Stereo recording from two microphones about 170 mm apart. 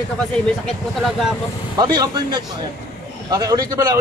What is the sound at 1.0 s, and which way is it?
Speech, centre (ahead or behind).